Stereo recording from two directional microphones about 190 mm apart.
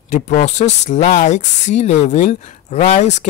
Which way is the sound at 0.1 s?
35° left (ahead or behind).